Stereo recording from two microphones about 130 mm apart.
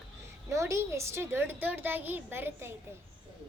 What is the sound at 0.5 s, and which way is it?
A child's voice, 20° right (ahead or behind).